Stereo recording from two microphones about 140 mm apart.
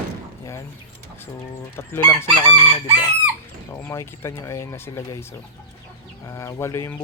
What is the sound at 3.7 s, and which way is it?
Speech, 20° left (ahead or behind).